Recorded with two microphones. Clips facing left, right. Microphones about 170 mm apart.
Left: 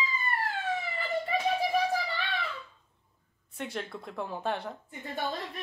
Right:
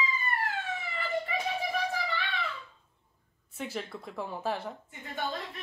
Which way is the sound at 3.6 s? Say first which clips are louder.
Even; centre (ahead or behind).